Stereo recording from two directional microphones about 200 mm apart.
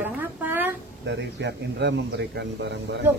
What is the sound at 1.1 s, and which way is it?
A man's voice, 60° right (ahead or behind).